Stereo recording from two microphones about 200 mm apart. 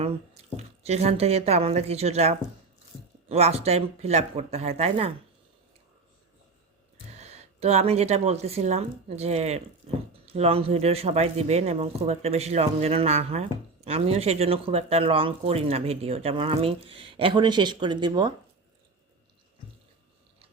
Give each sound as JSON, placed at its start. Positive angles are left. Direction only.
{"t": 0.5, "sound": "speech", "side_deg": -30}
{"t": 7.1, "sound": "speech", "side_deg": -35}